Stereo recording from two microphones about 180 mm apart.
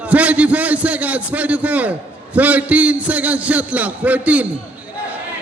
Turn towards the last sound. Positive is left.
turn(degrees=-10)  # may be behind; listen again after turning